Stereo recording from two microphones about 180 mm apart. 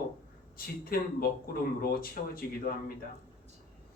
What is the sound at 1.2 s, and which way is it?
Speech, 55° left (ahead or behind).